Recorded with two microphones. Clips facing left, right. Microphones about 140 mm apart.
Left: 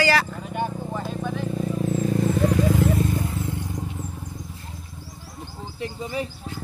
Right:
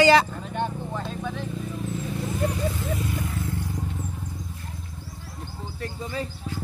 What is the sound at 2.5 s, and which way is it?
Vehicle, 90° left.